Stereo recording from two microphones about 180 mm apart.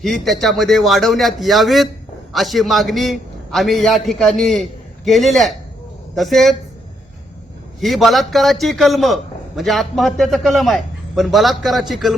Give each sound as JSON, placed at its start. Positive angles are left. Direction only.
{"t": 0.0, "sound": "a man's voice", "side_deg": 0}
{"t": 7.8, "sound": "a man's voice", "side_deg": 0}